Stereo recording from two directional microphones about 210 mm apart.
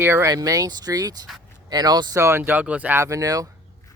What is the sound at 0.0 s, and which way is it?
Speech, 10° right (ahead or behind).